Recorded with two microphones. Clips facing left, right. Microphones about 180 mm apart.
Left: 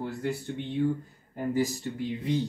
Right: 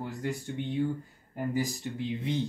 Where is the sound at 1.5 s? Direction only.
15° right (ahead or behind).